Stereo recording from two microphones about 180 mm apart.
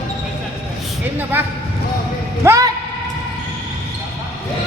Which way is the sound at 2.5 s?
20° right (ahead or behind).